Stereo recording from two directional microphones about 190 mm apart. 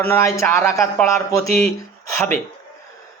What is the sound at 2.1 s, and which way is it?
Speech, 10° left (ahead or behind).